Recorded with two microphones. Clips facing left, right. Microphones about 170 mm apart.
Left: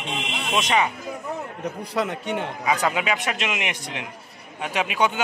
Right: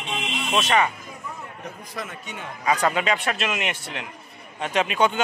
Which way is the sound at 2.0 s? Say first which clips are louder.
Left 11 dB; 65° left (ahead or behind).